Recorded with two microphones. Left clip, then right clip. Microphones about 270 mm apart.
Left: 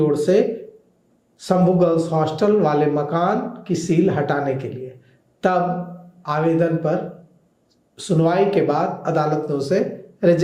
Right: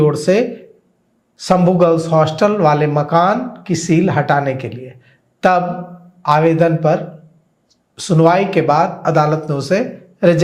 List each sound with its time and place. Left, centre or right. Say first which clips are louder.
0.0 s speech: right 3 dB; right
6.2 s speech: right 7 dB; right